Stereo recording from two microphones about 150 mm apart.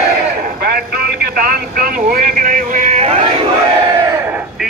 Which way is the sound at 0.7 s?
75° right (ahead or behind).